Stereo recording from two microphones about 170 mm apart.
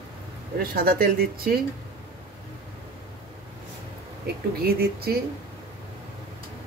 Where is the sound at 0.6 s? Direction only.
60° right (ahead or behind).